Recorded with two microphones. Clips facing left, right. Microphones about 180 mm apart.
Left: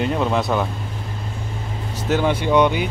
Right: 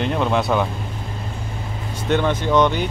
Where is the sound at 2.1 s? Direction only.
10° left (ahead or behind).